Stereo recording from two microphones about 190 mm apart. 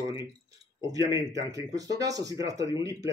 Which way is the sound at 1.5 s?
20° right (ahead or behind).